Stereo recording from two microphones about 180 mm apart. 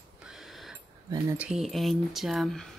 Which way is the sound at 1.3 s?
5° right (ahead or behind).